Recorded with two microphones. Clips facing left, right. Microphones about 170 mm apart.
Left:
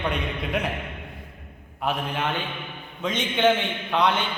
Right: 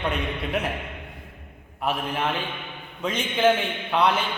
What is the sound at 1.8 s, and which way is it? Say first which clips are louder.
A man's voice: even; 5° right (ahead or behind).